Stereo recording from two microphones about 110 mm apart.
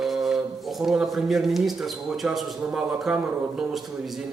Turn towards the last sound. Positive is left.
turn(degrees=-5)  # may be behind; listen again after turning